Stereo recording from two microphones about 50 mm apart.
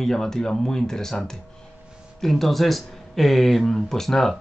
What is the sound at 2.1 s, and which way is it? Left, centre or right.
Speech, centre.